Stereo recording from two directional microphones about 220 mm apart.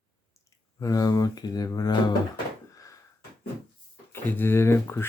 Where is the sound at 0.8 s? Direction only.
15° left (ahead or behind).